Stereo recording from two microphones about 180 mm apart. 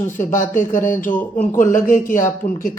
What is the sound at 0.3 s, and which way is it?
Speech, 45° left (ahead or behind).